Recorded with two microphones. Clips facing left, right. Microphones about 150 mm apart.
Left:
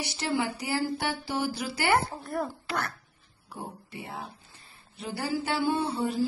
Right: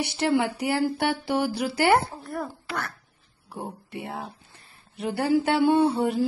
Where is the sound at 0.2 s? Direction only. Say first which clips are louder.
Right 6 dB; 60° right (ahead or behind).